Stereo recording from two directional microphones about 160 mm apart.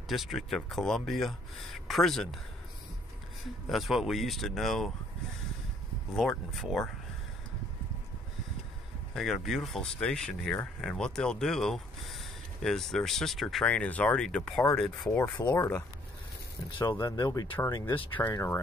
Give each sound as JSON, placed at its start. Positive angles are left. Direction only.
{"t": 0.1, "sound": "speech", "side_deg": 0}
{"t": 3.6, "sound": "speech", "side_deg": 0}
{"t": 6.1, "sound": "speech", "side_deg": 0}
{"t": 9.1, "sound": "speech", "side_deg": 0}
{"t": 16.8, "sound": "speech", "side_deg": 20}
{"t": 18.3, "sound": "speech", "side_deg": 15}